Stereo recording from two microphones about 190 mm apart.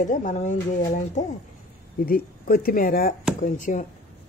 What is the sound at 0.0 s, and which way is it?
Speech, 40° left (ahead or behind).